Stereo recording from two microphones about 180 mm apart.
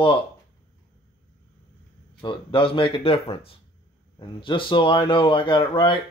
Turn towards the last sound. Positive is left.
turn(degrees=25)  # may be behind; listen again after turning